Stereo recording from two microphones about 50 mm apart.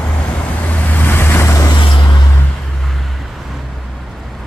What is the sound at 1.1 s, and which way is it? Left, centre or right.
Vehicle, left.